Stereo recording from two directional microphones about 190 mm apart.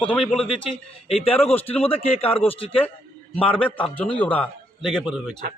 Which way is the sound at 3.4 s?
5° left (ahead or behind).